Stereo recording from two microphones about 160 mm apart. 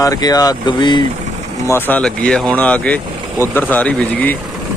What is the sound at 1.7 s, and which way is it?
Speech, 10° left (ahead or behind).